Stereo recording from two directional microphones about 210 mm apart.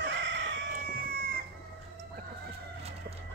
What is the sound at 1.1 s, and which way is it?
Chicken, 45° right (ahead or behind).